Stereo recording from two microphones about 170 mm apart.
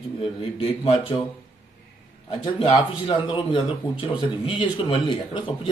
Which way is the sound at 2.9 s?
25° left (ahead or behind).